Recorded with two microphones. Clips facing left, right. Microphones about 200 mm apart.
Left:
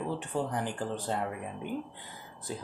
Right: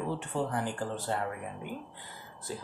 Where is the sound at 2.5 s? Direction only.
20° left (ahead or behind).